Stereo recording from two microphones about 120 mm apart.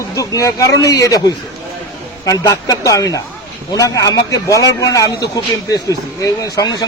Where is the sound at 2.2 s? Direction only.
30° left (ahead or behind).